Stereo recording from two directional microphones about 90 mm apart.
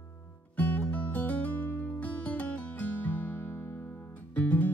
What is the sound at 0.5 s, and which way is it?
Music, 20° left (ahead or behind).